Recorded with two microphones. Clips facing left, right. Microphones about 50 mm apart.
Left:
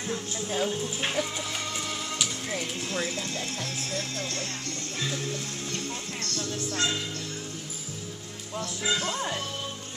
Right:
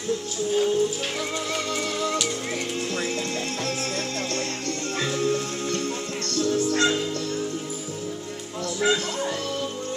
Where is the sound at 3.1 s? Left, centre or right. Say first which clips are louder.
Right 5 dB; right.